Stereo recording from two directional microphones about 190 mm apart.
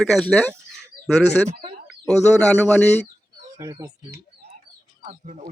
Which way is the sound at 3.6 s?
15° right (ahead or behind).